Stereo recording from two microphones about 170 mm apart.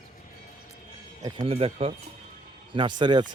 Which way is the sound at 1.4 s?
35° right (ahead or behind).